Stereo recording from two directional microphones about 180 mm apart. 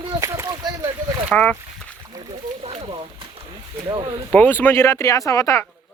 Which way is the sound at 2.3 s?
35° right (ahead or behind).